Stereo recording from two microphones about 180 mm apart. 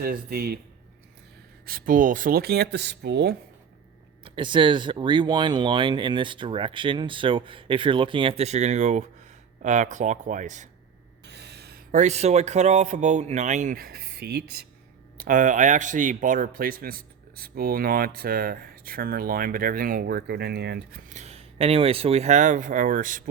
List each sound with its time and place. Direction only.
0.0 s speech: 55° right (ahead or behind)
1.6 s speech: 50° right (ahead or behind); by 3.3 s 70° right (ahead or behind)
4.2 s speech: 25° right (ahead or behind); by 10.7 s 40° right (ahead or behind)
11.3 s speech: 65° right (ahead or behind)
15.2 s speech: 50° right (ahead or behind)
21.1 s speech: 40° right (ahead or behind)